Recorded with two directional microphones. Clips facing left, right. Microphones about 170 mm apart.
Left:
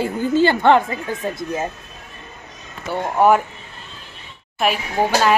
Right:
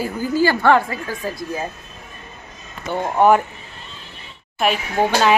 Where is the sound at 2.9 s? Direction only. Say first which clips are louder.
Even; centre (ahead or behind).